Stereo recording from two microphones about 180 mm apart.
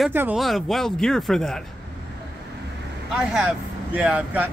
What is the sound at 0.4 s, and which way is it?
Speech, centre (ahead or behind).